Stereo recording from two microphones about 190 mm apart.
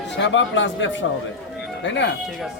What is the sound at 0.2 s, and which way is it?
Speech, 75° left (ahead or behind).